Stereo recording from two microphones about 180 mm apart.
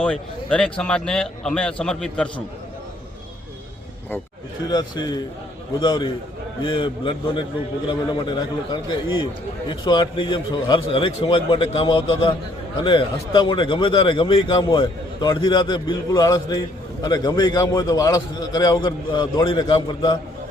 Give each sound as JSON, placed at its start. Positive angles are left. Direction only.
{"t": 0.0, "sound": "a man's voice", "side_deg": 5}
{"t": 4.7, "sound": "a man's voice", "side_deg": 25}